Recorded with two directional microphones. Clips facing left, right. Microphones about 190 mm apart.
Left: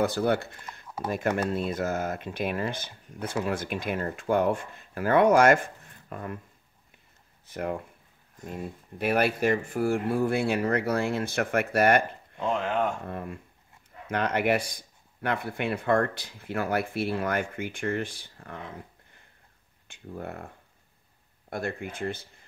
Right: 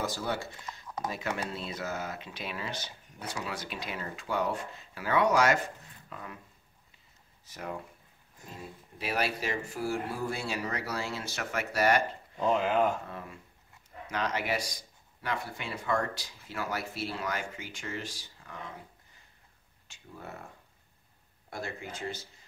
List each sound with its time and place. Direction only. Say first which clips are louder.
0.0 s speech: left 9 dB; 60° left (ahead or behind)
7.4 s speech: left 7 dB; 55° left (ahead or behind)
12.4 s speech: right 1 dB; 5° right (ahead or behind)
13.0 s speech: left 7 dB; 55° left (ahead or behind)
19.9 s speech: left 8 dB; 55° left (ahead or behind)
21.5 s speech: left 6 dB; 55° left (ahead or behind)